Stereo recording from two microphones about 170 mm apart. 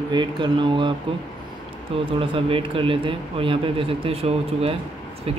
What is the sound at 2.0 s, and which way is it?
A man's voice, 30° right (ahead or behind).